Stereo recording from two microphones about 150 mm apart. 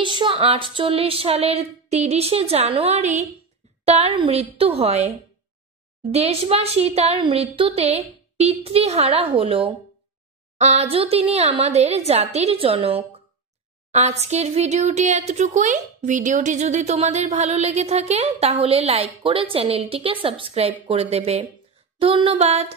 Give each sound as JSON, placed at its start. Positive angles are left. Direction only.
{"t": 0.0, "sound": "speech", "side_deg": -35}
{"t": 6.1, "sound": "speech", "side_deg": -45}